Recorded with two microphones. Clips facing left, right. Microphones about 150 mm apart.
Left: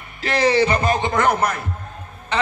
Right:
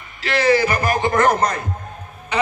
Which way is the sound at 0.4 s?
30° left (ahead or behind).